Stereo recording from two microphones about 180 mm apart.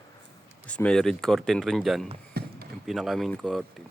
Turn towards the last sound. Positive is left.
turn(degrees=0)  # may be behind; listen again after turning